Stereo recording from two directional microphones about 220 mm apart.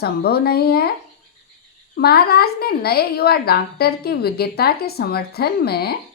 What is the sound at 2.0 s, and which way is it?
A woman's voice, 45° left (ahead or behind).